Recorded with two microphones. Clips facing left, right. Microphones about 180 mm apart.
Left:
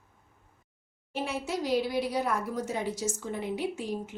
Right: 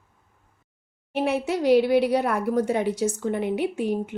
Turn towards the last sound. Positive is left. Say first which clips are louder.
# right 8 dB
turn(degrees=-60)  # may be behind; listen again after turning